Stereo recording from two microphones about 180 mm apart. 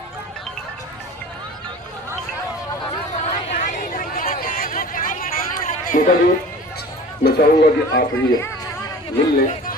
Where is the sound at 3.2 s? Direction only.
40° left (ahead or behind).